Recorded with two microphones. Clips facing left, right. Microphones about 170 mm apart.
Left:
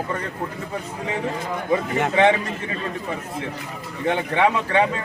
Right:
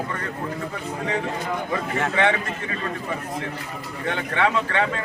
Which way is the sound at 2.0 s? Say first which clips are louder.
Left 4 dB; 20° left (ahead or behind).